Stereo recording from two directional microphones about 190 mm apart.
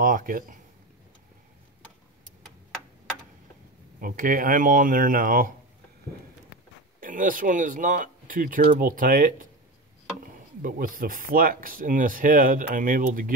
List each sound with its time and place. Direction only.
0.0 s speech: 45° right (ahead or behind)
4.0 s speech: 50° right (ahead or behind)
7.0 s speech: 45° right (ahead or behind)
10.6 s speech: 45° right (ahead or behind)